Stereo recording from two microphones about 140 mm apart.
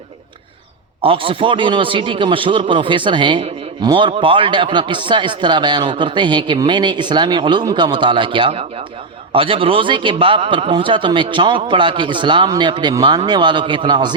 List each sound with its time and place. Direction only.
1.0 s a man's voice: 40° right (ahead or behind)